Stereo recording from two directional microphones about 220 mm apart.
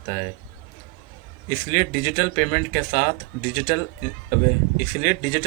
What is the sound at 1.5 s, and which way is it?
Speech, 40° left (ahead or behind).